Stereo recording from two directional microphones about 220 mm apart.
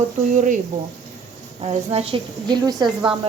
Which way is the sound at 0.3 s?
35° right (ahead or behind).